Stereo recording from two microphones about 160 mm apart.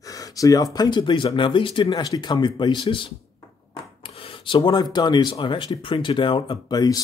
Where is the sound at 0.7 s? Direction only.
25° left (ahead or behind).